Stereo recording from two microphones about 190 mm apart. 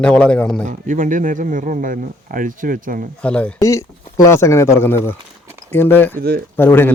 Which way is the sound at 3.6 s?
15° left (ahead or behind).